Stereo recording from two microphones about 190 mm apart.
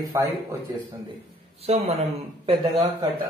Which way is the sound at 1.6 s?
35° right (ahead or behind).